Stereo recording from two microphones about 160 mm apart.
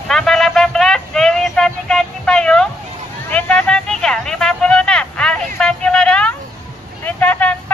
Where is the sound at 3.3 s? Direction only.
10° left (ahead or behind).